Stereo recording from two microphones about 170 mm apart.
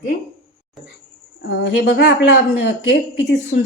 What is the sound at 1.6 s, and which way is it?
Speech, 85° left.